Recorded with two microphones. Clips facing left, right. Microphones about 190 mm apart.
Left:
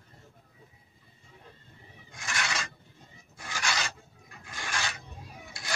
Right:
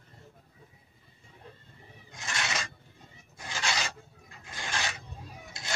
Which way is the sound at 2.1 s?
20° right (ahead or behind).